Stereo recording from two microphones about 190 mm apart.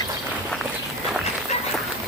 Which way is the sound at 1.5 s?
35° left (ahead or behind).